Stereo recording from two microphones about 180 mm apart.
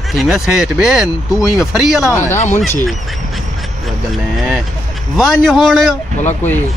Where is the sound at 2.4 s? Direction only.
45° left (ahead or behind).